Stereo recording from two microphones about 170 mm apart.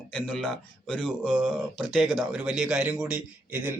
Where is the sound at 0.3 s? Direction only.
5° left (ahead or behind).